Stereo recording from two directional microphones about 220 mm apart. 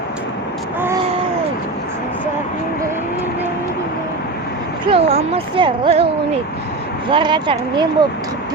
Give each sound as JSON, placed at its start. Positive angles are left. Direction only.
{"t": 4.9, "sound": "speech", "side_deg": -25}
{"t": 7.1, "sound": "speech", "side_deg": -20}